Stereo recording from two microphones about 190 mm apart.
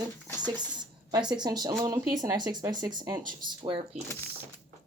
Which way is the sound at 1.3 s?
20° right (ahead or behind).